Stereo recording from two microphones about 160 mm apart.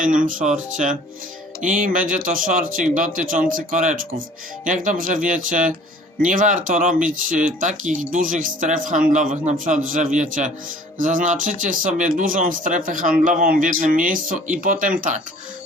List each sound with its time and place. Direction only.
0.0 s speech: 55° right (ahead or behind)